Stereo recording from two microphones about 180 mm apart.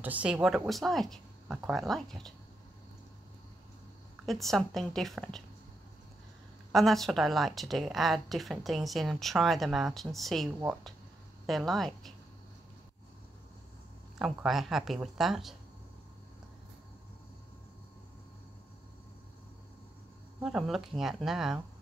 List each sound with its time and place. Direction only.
0.0 s speech: 5° right (ahead or behind)
4.3 s speech: centre (ahead or behind)
6.7 s speech: centre (ahead or behind)
14.1 s speech: centre (ahead or behind)
20.4 s speech: centre (ahead or behind)